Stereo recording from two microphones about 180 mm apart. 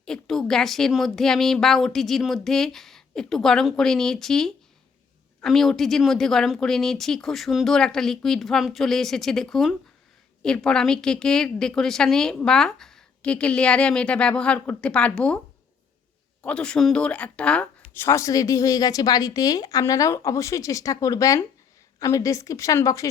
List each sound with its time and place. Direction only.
0.0 s a woman's voice: centre (ahead or behind)
16.4 s speech: 5° left (ahead or behind)